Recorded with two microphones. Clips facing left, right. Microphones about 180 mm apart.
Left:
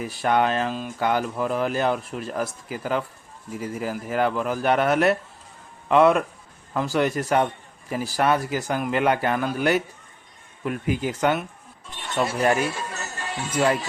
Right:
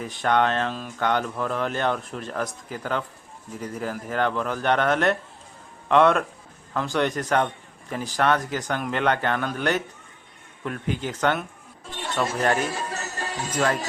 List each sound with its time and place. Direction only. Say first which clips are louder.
0.0 s a man's voice: left 1 dB; 5° left (ahead or behind)
12.7 s music: right 2 dB; 35° right (ahead or behind)
13.5 s a man's voice: left 3 dB; 10° left (ahead or behind)